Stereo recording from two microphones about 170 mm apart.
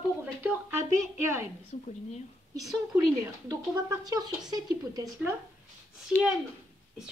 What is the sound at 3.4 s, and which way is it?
Speech, 20° right (ahead or behind).